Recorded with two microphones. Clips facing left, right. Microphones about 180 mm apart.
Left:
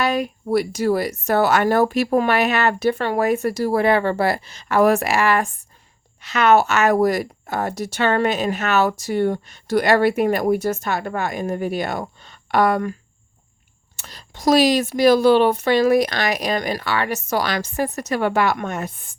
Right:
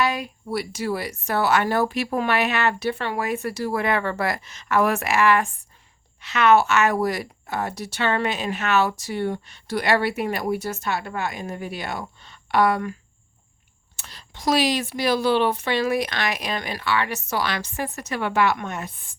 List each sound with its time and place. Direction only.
0.2 s speech: 50° left (ahead or behind)
14.0 s speech: 40° left (ahead or behind)